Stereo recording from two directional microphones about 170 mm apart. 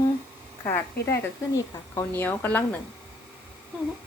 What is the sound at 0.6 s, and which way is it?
A woman's voice, 15° left (ahead or behind).